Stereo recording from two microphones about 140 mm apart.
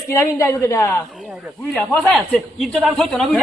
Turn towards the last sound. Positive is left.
turn(degrees=5)  # may be behind; listen again after turning